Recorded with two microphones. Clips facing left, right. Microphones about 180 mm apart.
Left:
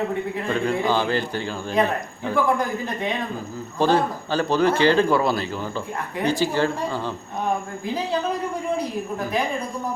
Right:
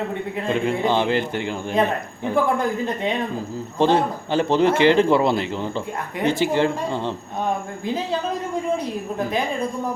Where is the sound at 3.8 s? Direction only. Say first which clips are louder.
Right 1 dB; 20° right (ahead or behind).